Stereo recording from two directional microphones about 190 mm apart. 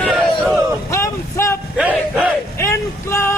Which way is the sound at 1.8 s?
5° right (ahead or behind).